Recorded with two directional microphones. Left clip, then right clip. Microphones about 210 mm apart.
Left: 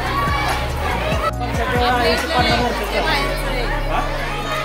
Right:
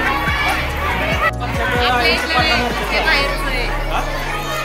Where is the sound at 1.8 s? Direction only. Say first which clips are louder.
Right 2 dB; 25° left (ahead or behind).